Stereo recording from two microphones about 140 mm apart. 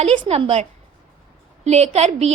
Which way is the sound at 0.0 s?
50° right (ahead or behind).